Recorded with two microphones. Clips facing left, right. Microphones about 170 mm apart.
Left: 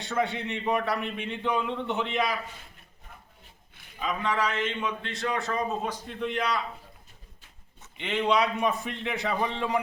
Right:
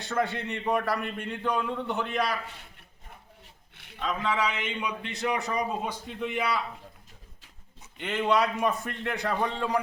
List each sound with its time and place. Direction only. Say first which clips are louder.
0.0 s speech: even; centre (ahead or behind)
4.0 s a man's voice: even; centre (ahead or behind)
7.9 s speech: even; centre (ahead or behind)